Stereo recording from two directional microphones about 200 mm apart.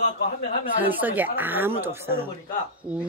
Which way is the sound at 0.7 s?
10° right (ahead or behind).